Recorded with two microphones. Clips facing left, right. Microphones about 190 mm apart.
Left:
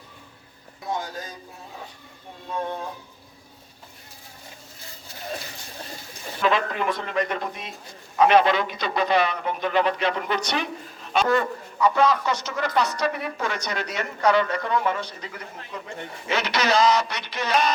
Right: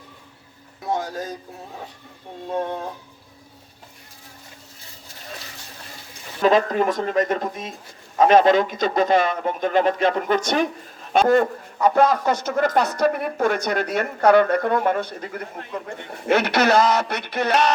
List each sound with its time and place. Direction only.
6.4 s a man's voice: 40° right (ahead or behind); by 17.7 s 60° right (ahead or behind)